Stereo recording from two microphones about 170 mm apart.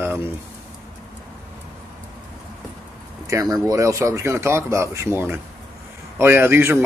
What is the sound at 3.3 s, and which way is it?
Speech, 20° right (ahead or behind).